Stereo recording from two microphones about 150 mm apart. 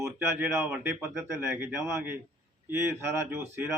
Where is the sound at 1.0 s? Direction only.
5° right (ahead or behind).